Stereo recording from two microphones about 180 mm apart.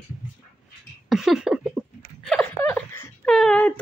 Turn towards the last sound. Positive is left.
turn(degrees=5)  # may be behind; listen again after turning